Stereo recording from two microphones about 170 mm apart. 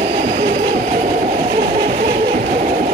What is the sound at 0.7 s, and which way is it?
Train, 45° right (ahead or behind).